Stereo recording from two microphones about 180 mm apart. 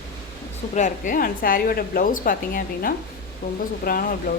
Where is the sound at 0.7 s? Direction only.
45° left (ahead or behind).